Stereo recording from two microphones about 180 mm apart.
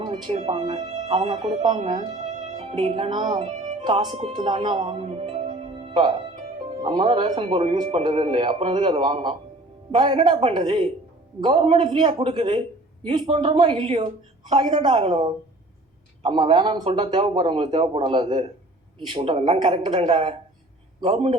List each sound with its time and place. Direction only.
0.0 s speech: 25° right (ahead or behind)